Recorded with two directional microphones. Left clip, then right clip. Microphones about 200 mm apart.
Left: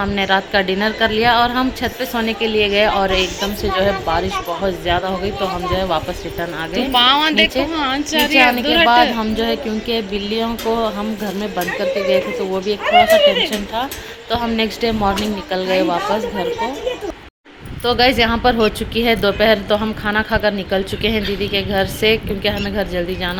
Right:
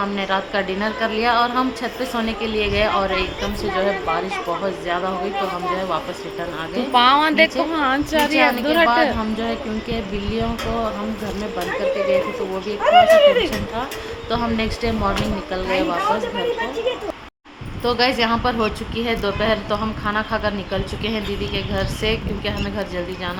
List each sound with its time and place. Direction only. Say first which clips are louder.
0.0 s a woman's voice: left 5 dB; 15° left (ahead or behind)
6.9 s speech: left 1 dB; 10° right (ahead or behind)
9.1 s a woman's voice: left 5 dB; 15° left (ahead or behind)
11.5 s a woman's voice: left 2 dB; 20° left (ahead or behind)
12.8 s speech: even; 40° right (ahead or behind)
14.3 s a woman's voice: left 4 dB; 15° left (ahead or behind)
17.8 s a woman's voice: left 4 dB; 15° left (ahead or behind)